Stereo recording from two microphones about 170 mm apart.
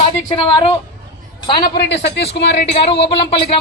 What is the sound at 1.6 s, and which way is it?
A woman's voice, 75° left (ahead or behind).